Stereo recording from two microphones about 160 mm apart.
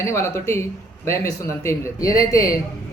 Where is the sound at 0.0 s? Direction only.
15° left (ahead or behind).